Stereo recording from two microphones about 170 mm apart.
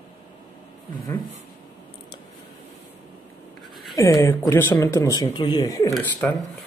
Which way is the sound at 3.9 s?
15° left (ahead or behind).